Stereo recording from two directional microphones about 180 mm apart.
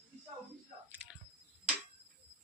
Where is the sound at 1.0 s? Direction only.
5° right (ahead or behind).